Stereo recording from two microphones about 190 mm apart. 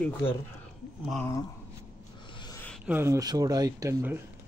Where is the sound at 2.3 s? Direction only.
20° left (ahead or behind).